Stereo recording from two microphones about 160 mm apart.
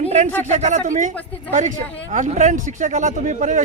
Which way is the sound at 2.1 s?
50° right (ahead or behind).